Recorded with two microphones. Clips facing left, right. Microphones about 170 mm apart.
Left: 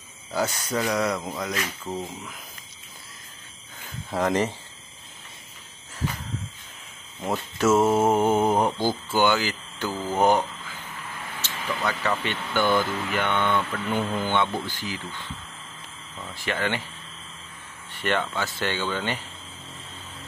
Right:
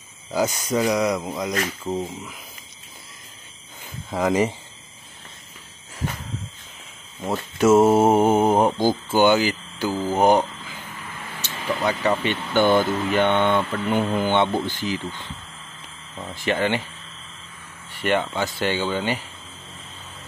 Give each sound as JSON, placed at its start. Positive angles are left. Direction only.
{"t": 0.3, "sound": "speech", "side_deg": -10}
{"t": 4.1, "sound": "speech", "side_deg": -10}
{"t": 7.5, "sound": "speech", "side_deg": -20}
{"t": 11.4, "sound": "speech", "side_deg": -20}
{"t": 16.2, "sound": "speech", "side_deg": -20}
{"t": 18.0, "sound": "speech", "side_deg": -15}